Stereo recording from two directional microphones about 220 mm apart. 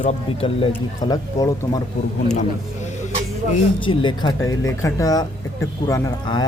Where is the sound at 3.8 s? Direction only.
20° left (ahead or behind).